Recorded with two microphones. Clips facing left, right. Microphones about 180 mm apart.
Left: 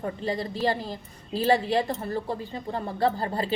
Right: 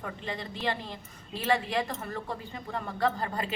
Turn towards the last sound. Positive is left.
turn(degrees=35)  # may be behind; listen again after turning